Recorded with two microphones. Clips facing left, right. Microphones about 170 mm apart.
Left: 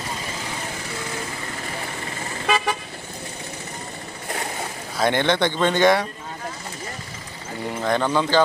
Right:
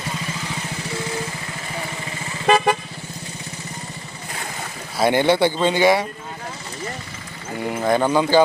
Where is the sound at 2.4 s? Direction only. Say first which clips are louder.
Right 6 dB; 55° right (ahead or behind).